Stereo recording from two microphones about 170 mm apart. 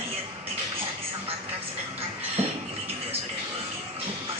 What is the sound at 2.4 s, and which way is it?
Music, 40° right (ahead or behind).